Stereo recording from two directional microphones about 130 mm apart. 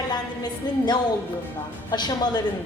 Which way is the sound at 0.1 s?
35° left (ahead or behind).